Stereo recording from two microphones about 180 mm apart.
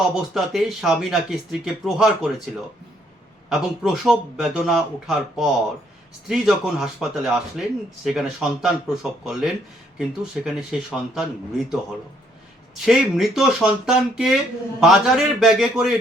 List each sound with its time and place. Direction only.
0.1 s speech: centre (ahead or behind)
3.5 s speech: centre (ahead or behind)
12.8 s speech: centre (ahead or behind)